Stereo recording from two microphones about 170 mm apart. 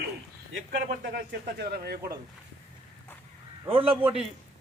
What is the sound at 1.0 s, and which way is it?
Speech, 70° right (ahead or behind).